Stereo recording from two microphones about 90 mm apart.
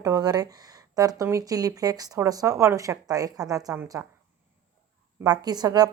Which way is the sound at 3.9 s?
30° right (ahead or behind).